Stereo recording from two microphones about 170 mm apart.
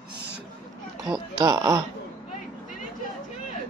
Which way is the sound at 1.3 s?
25° right (ahead or behind).